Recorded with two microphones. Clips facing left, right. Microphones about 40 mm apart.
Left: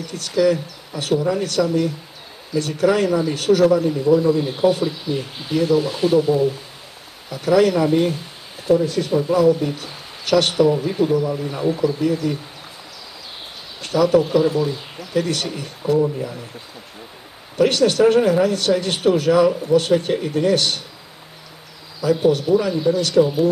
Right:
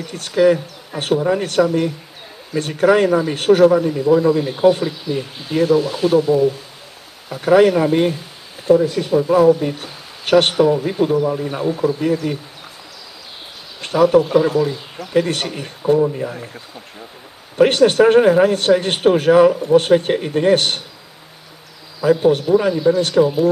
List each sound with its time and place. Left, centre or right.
0.0 s speech: right
5.8 s speech: centre
7.2 s speech: right
12.1 s speech: right
13.7 s speech: right
17.6 s speech: right
22.0 s speech: right